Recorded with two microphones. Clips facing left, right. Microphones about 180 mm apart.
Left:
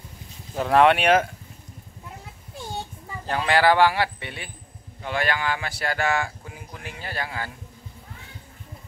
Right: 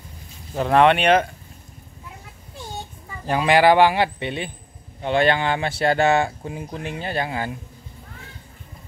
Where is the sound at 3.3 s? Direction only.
15° right (ahead or behind).